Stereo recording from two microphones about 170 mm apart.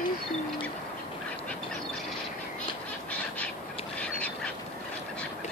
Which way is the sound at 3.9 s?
10° left (ahead or behind).